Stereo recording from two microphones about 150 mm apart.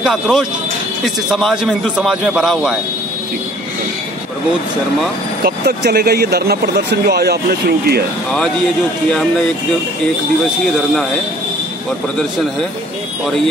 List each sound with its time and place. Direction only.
0.0 s a man's voice: centre (ahead or behind)
5.4 s speech: 90° right